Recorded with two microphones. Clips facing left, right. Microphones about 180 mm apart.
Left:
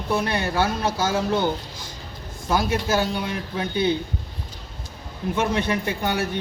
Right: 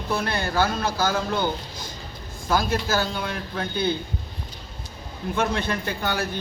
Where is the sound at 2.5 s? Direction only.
20° left (ahead or behind).